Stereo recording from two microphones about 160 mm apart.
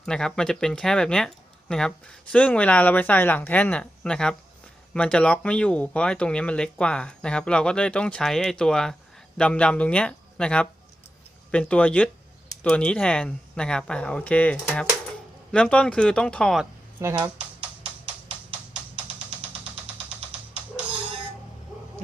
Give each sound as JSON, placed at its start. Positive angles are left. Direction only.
{"t": 0.0, "sound": "speech", "side_deg": 5}
{"t": 17.0, "sound": "speech", "side_deg": -15}